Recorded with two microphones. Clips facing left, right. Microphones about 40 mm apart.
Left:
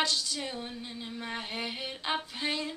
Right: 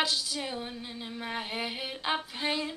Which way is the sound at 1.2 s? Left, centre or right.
Centre.